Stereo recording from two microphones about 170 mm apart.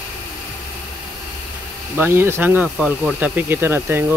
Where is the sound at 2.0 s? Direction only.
15° right (ahead or behind).